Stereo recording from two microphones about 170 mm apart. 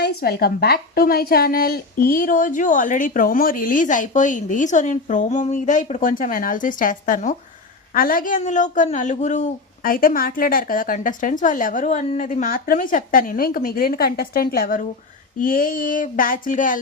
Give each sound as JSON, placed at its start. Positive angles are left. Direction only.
{"t": 0.0, "sound": "a woman's voice", "side_deg": 65}